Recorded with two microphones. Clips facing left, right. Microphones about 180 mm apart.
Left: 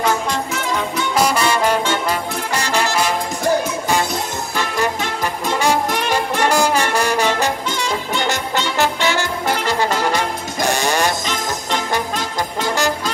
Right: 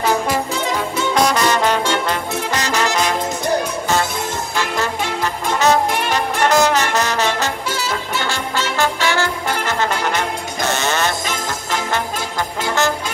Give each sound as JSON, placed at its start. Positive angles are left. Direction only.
{"t": 1.1, "sound": "music", "side_deg": 10}
{"t": 5.2, "sound": "music", "side_deg": 10}
{"t": 7.7, "sound": "music", "side_deg": -5}
{"t": 8.3, "sound": "music", "side_deg": 15}